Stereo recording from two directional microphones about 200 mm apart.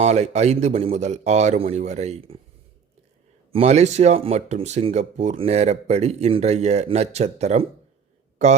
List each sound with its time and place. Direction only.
0.0 s speech: 35° right (ahead or behind)
3.5 s speech: 30° right (ahead or behind)